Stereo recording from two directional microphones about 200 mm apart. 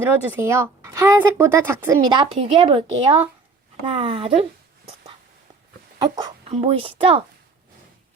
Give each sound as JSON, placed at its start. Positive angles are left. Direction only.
{"t": 0.0, "sound": "speech", "side_deg": -10}
{"t": 6.0, "sound": "speech", "side_deg": -20}